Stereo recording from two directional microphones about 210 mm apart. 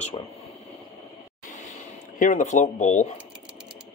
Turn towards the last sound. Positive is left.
turn(degrees=35)  # may be behind; listen again after turning